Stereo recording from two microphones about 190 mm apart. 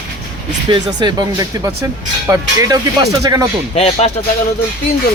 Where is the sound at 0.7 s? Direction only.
25° right (ahead or behind).